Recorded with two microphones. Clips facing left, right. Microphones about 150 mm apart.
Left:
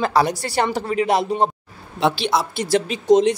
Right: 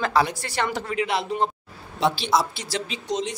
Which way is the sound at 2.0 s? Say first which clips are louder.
Left 2 dB; 65° left (ahead or behind).